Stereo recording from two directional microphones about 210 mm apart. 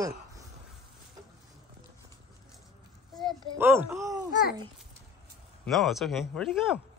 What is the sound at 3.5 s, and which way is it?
Speech, 10° right (ahead or behind).